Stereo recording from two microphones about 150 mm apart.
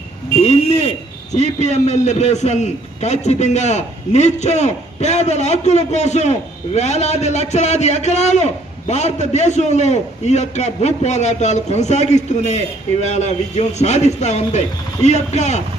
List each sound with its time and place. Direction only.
0.4 s a man's voice: 45° left (ahead or behind)